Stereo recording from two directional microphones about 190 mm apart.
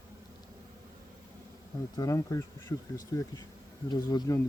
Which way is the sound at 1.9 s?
20° left (ahead or behind).